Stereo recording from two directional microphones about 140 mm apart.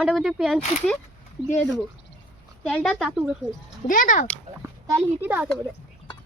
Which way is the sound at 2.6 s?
5° left (ahead or behind).